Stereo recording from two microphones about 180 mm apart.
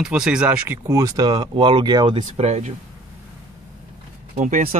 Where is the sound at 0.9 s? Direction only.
15° right (ahead or behind); by 2.7 s 40° right (ahead or behind).